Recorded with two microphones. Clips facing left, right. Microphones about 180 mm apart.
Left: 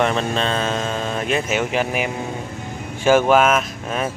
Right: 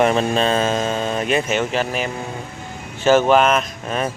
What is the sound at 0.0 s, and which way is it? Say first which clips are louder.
Speech: right 3 dB; 5° right (ahead or behind).